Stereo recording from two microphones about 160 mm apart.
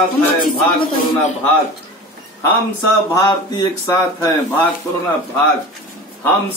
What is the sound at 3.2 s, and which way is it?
Speech, 20° left (ahead or behind).